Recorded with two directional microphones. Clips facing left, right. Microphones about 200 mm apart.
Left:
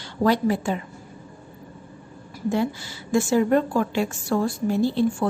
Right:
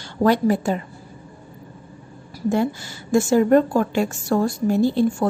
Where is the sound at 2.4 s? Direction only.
45° right (ahead or behind).